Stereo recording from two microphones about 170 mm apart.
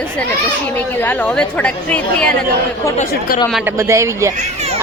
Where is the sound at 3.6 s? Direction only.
15° right (ahead or behind).